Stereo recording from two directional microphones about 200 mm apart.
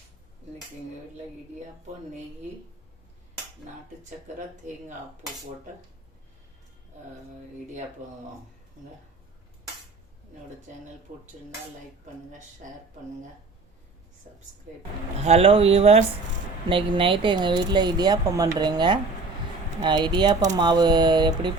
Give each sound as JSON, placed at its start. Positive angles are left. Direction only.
{"t": 5.2, "sound": "speech", "side_deg": -20}
{"t": 11.1, "sound": "speech", "side_deg": -35}
{"t": 12.6, "sound": "speech", "side_deg": -40}
{"t": 14.3, "sound": "speech", "side_deg": -40}
{"t": 15.2, "sound": "speech", "side_deg": -30}